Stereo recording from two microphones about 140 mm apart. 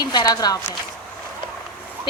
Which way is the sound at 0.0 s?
30° left (ahead or behind).